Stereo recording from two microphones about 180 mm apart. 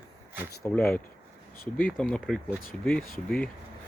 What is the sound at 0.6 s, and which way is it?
Speech, 10° left (ahead or behind).